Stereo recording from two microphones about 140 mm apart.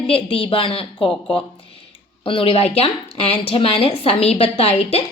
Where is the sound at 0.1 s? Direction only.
40° left (ahead or behind).